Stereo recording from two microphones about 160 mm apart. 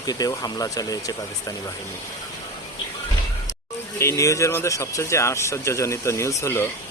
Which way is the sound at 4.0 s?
20° left (ahead or behind).